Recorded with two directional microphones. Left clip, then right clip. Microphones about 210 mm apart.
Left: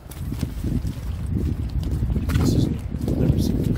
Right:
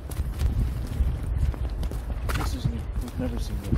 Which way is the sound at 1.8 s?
25° right (ahead or behind).